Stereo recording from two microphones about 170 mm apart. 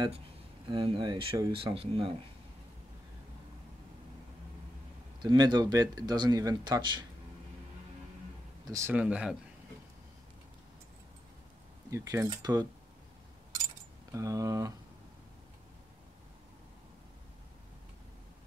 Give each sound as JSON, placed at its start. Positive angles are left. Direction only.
{"t": 0.7, "sound": "speech", "side_deg": -30}
{"t": 5.2, "sound": "speech", "side_deg": -25}
{"t": 8.6, "sound": "speech", "side_deg": -15}
{"t": 11.9, "sound": "speech", "side_deg": -15}
{"t": 14.1, "sound": "speech", "side_deg": -20}